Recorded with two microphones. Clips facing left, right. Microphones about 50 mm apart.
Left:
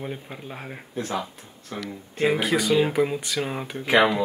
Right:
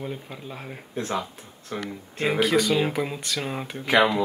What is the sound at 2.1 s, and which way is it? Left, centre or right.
Speech, centre.